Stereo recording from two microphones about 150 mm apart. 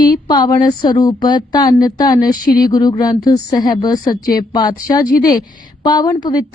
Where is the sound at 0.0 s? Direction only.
30° left (ahead or behind).